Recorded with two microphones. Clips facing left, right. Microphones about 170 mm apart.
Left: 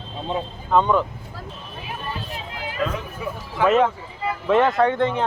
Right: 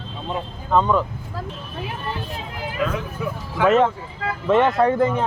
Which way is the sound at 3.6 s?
5° left (ahead or behind).